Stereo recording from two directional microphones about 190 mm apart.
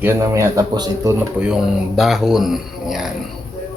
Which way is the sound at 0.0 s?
15° right (ahead or behind).